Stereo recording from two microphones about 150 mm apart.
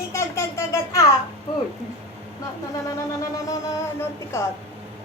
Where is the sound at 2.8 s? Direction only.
20° left (ahead or behind).